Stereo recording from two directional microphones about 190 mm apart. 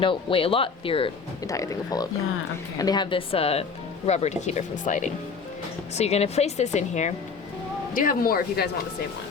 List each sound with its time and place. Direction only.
0.0 s speech: 25° left (ahead or behind)
1.5 s speech: 15° left (ahead or behind); by 7.1 s 35° left (ahead or behind)
7.9 s speech: 50° left (ahead or behind)